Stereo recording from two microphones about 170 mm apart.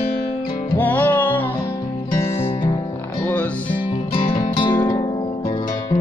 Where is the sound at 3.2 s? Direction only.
10° left (ahead or behind).